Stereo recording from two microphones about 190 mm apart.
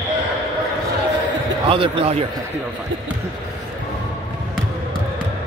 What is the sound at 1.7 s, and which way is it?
Speech, 30° right (ahead or behind).